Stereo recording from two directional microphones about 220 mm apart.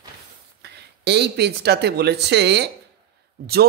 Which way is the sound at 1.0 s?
50° right (ahead or behind).